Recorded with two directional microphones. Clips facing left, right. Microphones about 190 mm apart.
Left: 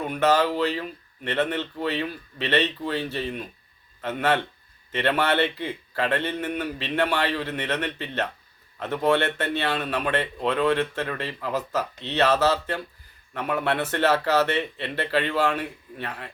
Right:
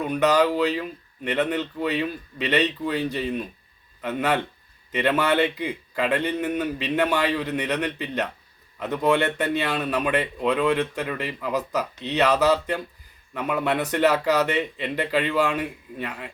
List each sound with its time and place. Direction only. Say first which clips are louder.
0.1 s speech: right 2 dB; 15° right (ahead or behind)